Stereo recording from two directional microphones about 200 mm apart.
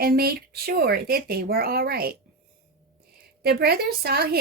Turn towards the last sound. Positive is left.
turn(degrees=-50)  # may be behind; listen again after turning